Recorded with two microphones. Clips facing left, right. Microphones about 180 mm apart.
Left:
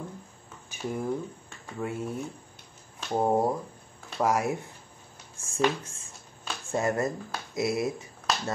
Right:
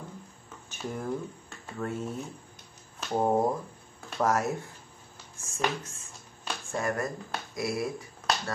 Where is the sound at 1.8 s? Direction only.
10° left (ahead or behind).